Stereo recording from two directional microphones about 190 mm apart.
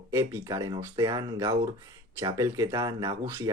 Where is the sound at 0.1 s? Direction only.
15° right (ahead or behind).